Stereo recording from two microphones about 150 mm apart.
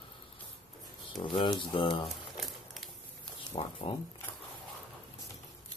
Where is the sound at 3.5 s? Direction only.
35° left (ahead or behind).